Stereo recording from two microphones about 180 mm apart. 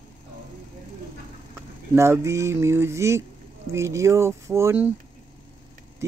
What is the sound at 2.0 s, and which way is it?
Speech, 15° right (ahead or behind).